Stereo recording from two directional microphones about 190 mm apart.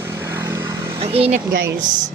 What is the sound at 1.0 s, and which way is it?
Speech, 30° right (ahead or behind).